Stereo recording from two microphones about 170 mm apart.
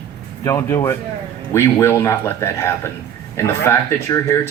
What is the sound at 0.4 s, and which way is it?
Speech, 20° left (ahead or behind).